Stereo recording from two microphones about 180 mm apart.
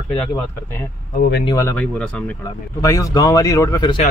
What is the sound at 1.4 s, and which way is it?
Speech, 20° left (ahead or behind).